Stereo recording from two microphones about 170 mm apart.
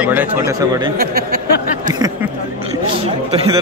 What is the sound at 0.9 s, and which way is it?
Speech, 65° right (ahead or behind).